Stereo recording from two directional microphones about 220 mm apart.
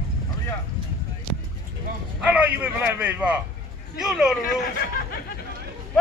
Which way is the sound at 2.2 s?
5° right (ahead or behind).